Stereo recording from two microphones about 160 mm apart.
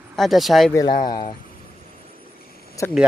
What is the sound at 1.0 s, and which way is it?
Speech, 30° left (ahead or behind).